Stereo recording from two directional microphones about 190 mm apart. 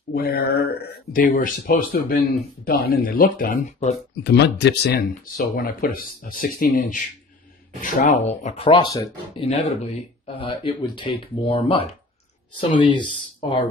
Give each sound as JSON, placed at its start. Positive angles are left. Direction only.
{"t": 0.1, "sound": "speech", "side_deg": 50}
{"t": 4.2, "sound": "speech", "side_deg": 60}
{"t": 9.4, "sound": "speech", "side_deg": 35}